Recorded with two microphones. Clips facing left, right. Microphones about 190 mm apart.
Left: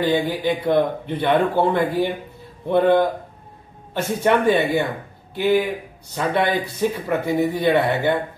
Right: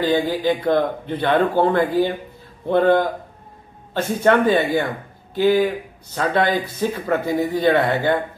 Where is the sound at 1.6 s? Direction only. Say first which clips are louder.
Right 2 dB; 20° left (ahead or behind).